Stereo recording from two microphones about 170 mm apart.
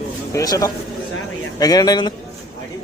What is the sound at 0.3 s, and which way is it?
Speech, 20° left (ahead or behind).